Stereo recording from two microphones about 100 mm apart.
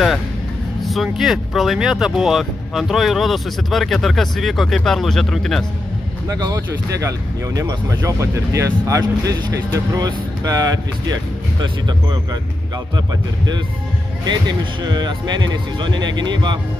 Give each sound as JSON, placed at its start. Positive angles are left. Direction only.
{"t": 0.8, "sound": "speech", "side_deg": 0}
{"t": 6.2, "sound": "speech", "side_deg": -40}
{"t": 14.2, "sound": "speech", "side_deg": -45}